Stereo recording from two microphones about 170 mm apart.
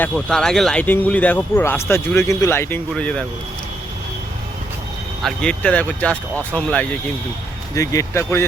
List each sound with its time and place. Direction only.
0.0 s speech: 5° left (ahead or behind)
5.2 s speech: 5° left (ahead or behind)